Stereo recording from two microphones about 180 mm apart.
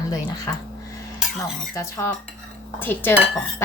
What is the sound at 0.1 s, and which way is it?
Speech, 20° left (ahead or behind).